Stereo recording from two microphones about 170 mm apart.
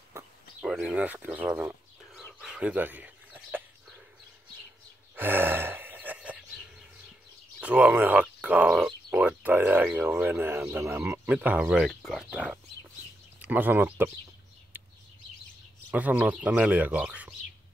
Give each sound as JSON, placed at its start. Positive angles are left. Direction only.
{"t": 0.6, "sound": "speech", "side_deg": -5}
{"t": 2.4, "sound": "a sound", "side_deg": -5}
{"t": 5.1, "sound": "gasp", "side_deg": -10}
{"t": 7.6, "sound": "speech", "side_deg": -10}
{"t": 15.9, "sound": "speech", "side_deg": -10}